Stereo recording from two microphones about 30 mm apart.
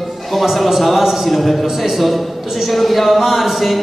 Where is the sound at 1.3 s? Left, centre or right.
Centre.